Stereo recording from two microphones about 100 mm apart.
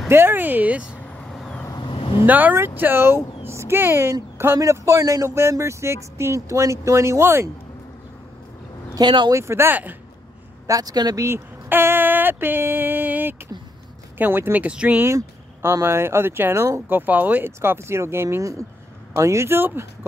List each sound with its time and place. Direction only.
0.1 s speech: 20° right (ahead or behind)
1.0 s vehicle: 10° left (ahead or behind)
1.7 s vehicle: 50° left (ahead or behind)
2.2 s speech: 15° right (ahead or behind)
8.9 s speech: 50° right (ahead or behind)
9.3 s speech: 25° right (ahead or behind)
10.7 s speech: 40° right (ahead or behind)
11.2 s speech: 25° right (ahead or behind)
15.0 s speech: 30° right (ahead or behind)